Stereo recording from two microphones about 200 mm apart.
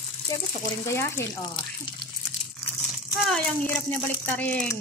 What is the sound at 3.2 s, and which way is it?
Speech, 5° left (ahead or behind).